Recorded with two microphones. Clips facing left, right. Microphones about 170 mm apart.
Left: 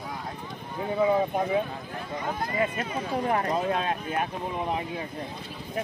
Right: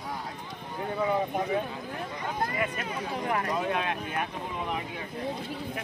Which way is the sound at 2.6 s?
35° left (ahead or behind).